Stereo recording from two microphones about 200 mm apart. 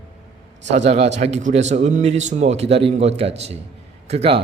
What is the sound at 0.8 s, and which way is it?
A man's voice, 30° right (ahead or behind).